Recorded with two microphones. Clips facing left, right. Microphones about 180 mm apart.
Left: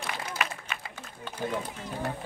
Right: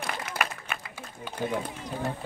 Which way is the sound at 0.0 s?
55° right (ahead or behind).